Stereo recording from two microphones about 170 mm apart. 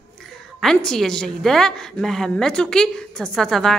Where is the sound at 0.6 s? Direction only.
5° left (ahead or behind).